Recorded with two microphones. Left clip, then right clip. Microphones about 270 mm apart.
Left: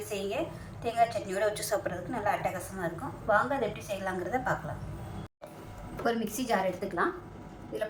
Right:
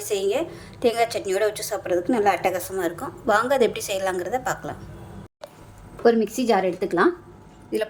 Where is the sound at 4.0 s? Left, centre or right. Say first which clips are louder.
Right 7 dB; right.